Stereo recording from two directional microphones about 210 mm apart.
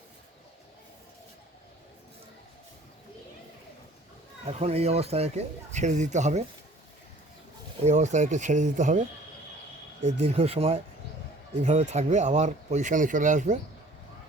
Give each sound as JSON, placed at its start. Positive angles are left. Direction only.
{"t": 4.4, "sound": "speech", "side_deg": -30}
{"t": 7.9, "sound": "speech", "side_deg": -35}
{"t": 10.0, "sound": "speech", "side_deg": -30}